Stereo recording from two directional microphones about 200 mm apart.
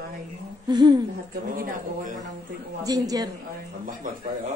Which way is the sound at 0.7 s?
20° right (ahead or behind).